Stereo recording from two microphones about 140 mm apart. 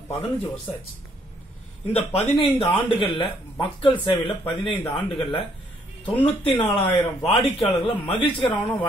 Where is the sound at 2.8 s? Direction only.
40° left (ahead or behind).